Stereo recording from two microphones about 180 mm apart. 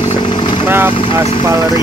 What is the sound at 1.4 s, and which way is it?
Vehicle, 15° right (ahead or behind).